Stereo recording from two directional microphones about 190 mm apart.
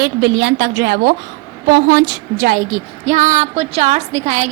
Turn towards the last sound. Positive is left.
turn(degrees=-35)  # may be behind; listen again after turning